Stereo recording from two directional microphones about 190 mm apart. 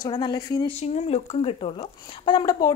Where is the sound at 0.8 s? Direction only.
35° left (ahead or behind).